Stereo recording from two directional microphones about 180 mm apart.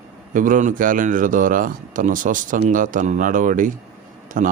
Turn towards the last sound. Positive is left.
turn(degrees=-45)  # may be behind; listen again after turning